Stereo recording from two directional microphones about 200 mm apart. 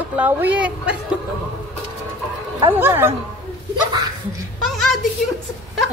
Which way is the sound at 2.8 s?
10° right (ahead or behind).